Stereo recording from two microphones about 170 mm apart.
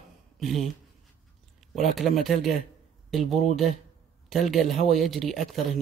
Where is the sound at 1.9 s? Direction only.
Centre (ahead or behind).